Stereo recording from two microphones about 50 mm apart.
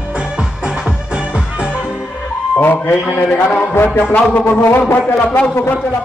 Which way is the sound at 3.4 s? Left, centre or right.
Left.